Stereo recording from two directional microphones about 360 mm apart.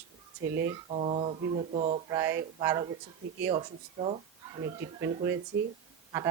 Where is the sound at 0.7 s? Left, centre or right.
Centre.